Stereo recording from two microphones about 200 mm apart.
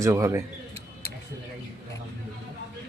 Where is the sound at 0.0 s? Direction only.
15° right (ahead or behind).